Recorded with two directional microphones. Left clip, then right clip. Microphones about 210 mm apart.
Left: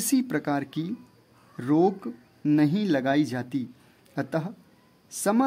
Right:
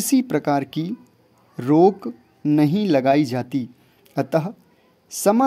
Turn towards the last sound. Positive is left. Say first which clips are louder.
# right 7 dB
turn(degrees=-25)  # may be behind; listen again after turning